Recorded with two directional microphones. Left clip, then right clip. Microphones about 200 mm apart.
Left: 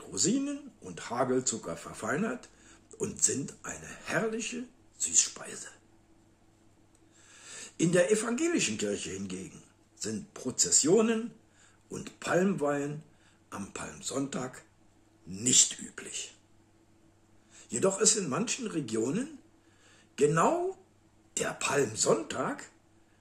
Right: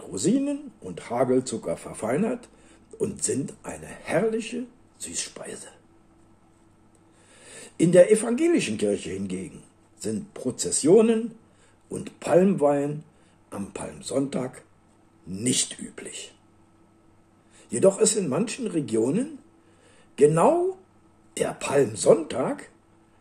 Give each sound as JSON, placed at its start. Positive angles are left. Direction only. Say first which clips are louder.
{"t": 0.1, "sound": "speech", "louder": "right 6 dB", "side_deg": -5}
{"t": 7.3, "sound": "speech", "louder": "right 7 dB", "side_deg": -5}
{"t": 17.6, "sound": "speech", "louder": "right 7 dB", "side_deg": -5}